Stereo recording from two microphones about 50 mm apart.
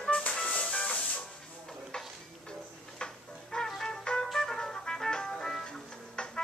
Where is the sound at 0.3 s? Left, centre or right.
Centre.